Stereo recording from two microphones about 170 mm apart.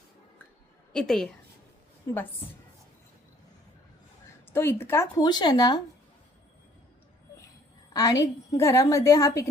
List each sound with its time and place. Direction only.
0.9 s a woman's voice: 5° left (ahead or behind)
4.5 s a woman's voice: 15° left (ahead or behind)
7.9 s a woman's voice: 20° left (ahead or behind)